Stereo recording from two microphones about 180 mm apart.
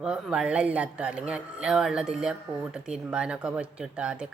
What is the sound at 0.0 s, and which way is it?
Speech, 5° right (ahead or behind).